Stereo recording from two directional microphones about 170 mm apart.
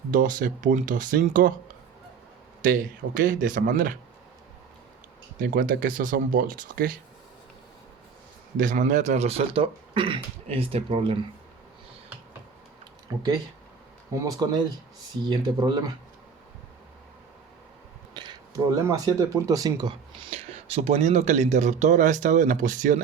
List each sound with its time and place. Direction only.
0.1 s speech: 50° right (ahead or behind)
3.2 s speech: 50° right (ahead or behind)
5.4 s speech: 55° right (ahead or behind)
8.5 s speech: 50° right (ahead or behind); by 11.2 s 35° right (ahead or behind)
14.2 s speech: 20° right (ahead or behind)
18.1 s speech: 25° right (ahead or behind)
20.3 s speech: 35° right (ahead or behind)